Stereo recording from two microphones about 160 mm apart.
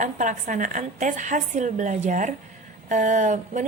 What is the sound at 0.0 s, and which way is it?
A woman's voice, 50° right (ahead or behind).